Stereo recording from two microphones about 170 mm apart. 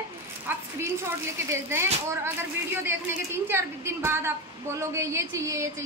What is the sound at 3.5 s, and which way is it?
A woman's voice, 15° right (ahead or behind).